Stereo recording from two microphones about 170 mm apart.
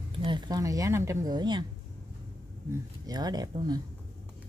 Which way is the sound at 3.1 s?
25° right (ahead or behind).